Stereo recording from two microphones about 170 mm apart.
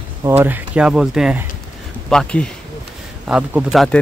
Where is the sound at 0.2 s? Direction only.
10° right (ahead or behind); by 2.5 s 5° left (ahead or behind).